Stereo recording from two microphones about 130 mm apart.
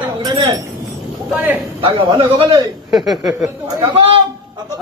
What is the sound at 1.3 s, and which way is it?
Speech, 10° right (ahead or behind).